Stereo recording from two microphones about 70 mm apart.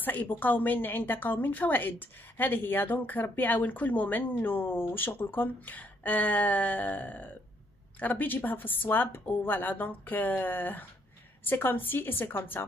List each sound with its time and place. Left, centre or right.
0.0 s a woman's voice: left